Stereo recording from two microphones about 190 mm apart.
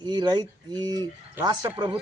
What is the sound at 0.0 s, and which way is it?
Speech, 25° right (ahead or behind).